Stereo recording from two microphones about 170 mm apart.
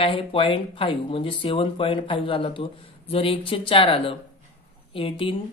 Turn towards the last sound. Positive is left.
turn(degrees=30)  # may be behind; listen again after turning